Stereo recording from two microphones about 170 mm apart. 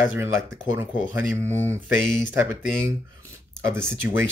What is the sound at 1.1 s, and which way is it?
Speech, 15° right (ahead or behind).